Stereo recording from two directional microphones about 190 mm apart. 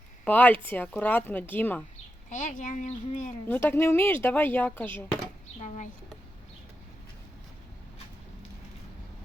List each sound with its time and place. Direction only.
0.3 s speech: 10° left (ahead or behind)
2.3 s speech: 45° left (ahead or behind)
3.5 s speech: 10° left (ahead or behind)
5.6 s speech: 40° left (ahead or behind)